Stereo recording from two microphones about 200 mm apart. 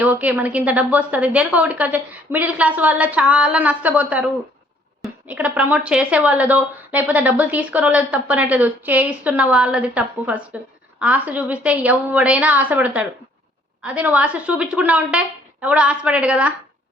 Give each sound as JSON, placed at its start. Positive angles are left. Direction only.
{"t": 0.0, "sound": "speech", "side_deg": -5}